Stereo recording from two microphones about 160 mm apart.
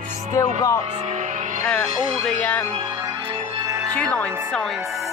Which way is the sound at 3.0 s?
30° right (ahead or behind).